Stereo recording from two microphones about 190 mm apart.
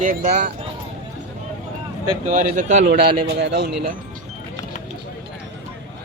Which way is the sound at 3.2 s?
65° right (ahead or behind).